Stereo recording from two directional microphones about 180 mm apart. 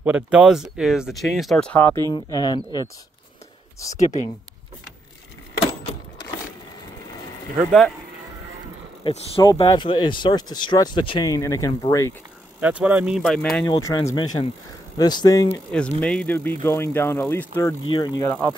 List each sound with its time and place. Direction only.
0.0 s speech: 5° right (ahead or behind); by 2.9 s 20° left (ahead or behind)
3.9 s speech: 40° left (ahead or behind)
9.0 s speech: 30° left (ahead or behind)
12.5 s speech: 10° right (ahead or behind)
13.7 s speech: 15° left (ahead or behind)
15.7 s speech: 5° left (ahead or behind)